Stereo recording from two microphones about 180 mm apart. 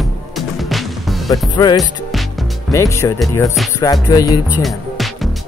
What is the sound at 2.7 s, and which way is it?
Speech, 15° left (ahead or behind).